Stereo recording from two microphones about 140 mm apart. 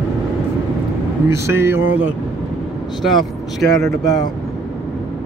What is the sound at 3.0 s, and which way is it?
Speech, centre (ahead or behind).